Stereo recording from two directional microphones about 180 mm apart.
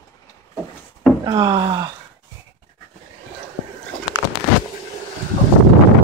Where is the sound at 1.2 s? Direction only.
25° right (ahead or behind).